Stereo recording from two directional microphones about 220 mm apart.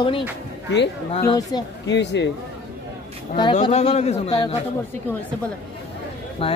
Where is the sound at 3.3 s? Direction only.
20° left (ahead or behind).